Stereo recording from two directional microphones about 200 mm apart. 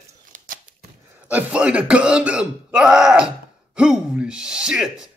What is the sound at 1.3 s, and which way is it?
Speech, 5° right (ahead or behind).